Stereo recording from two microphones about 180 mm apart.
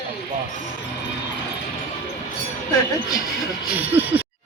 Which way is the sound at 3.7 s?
10° right (ahead or behind).